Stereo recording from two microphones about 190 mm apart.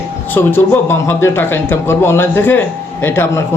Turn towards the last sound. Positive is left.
turn(degrees=10)  # may be behind; listen again after turning